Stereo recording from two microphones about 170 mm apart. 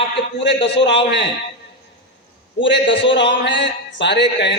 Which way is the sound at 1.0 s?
90° left.